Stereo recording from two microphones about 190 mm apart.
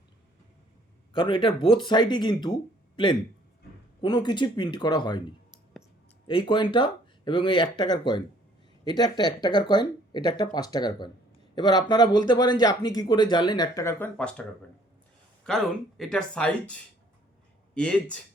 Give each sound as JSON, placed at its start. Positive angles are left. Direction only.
{"t": 1.1, "sound": "speech", "side_deg": 25}
{"t": 6.2, "sound": "speech", "side_deg": 25}
{"t": 16.0, "sound": "speech", "side_deg": 5}